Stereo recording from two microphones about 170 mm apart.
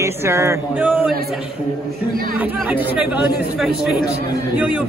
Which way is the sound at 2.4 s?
10° right (ahead or behind).